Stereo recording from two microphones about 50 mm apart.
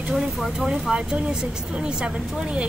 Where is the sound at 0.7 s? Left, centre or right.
Centre.